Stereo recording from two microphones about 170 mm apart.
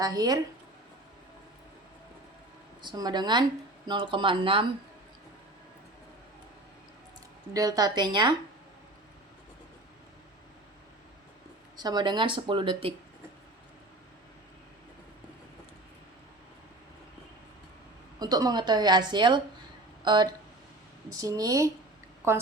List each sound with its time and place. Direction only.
0.0 s a woman's voice: 20° right (ahead or behind)
2.8 s a woman's voice: 25° right (ahead or behind)
7.5 s a woman's voice: 20° right (ahead or behind)
11.8 s a woman's voice: 25° right (ahead or behind)
18.2 s a woman's voice: 25° right (ahead or behind)
21.2 s a woman's voice: 20° right (ahead or behind)